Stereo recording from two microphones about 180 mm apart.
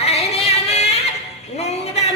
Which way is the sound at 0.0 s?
35° left (ahead or behind).